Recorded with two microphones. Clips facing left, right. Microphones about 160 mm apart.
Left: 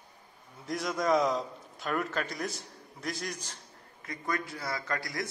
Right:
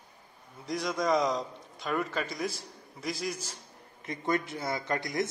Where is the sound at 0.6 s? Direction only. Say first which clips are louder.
Right 1 dB; centre (ahead or behind).